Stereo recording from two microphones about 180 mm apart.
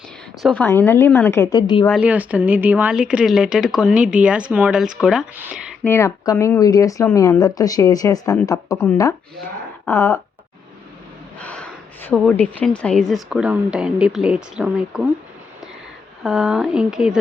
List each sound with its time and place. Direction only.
0.4 s a woman's voice: 5° left (ahead or behind); by 1.9 s 20° left (ahead or behind)
1.9 s speech: 5° right (ahead or behind)
5.8 s speech: 15° left (ahead or behind)
9.8 s a sound: 15° left (ahead or behind)
11.3 s speech: 5° left (ahead or behind)
16.2 s speech: centre (ahead or behind)